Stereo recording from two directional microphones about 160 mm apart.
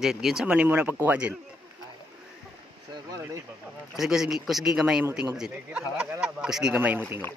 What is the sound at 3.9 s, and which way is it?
Speech, 5° right (ahead or behind).